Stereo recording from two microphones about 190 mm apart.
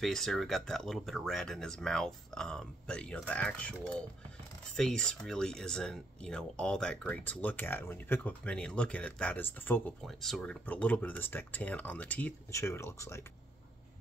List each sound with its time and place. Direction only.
0.0 s speech: centre (ahead or behind)